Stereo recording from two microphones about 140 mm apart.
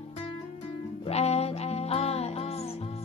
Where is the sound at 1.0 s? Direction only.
50° left (ahead or behind).